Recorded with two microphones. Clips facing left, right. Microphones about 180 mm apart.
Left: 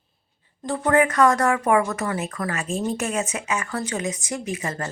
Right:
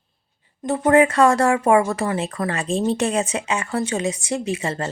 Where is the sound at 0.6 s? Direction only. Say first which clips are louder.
Right 4 dB; 20° right (ahead or behind).